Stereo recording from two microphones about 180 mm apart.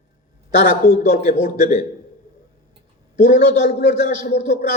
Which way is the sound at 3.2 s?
45° left (ahead or behind).